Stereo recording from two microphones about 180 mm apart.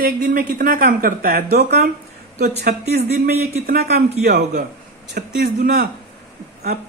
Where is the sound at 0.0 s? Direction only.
50° right (ahead or behind).